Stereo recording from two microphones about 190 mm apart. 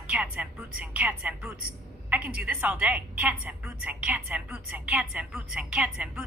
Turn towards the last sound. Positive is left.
turn(degrees=-5)  # may be behind; listen again after turning